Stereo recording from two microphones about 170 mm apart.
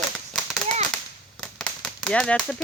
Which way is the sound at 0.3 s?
Centre (ahead or behind).